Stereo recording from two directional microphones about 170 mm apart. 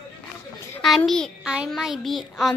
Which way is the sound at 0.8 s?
Centre (ahead or behind).